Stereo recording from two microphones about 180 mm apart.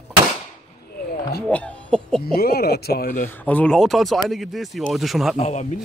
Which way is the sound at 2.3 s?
60° left (ahead or behind).